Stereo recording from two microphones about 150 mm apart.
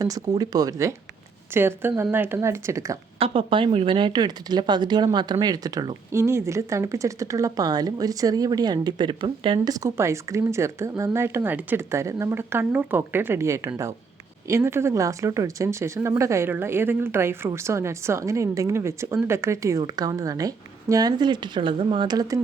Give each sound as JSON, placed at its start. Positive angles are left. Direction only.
{"t": 0.0, "sound": "speech", "side_deg": -25}
{"t": 3.2, "sound": "speech", "side_deg": -40}